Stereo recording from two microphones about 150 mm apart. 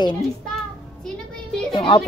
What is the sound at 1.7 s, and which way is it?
Music, 40° left (ahead or behind).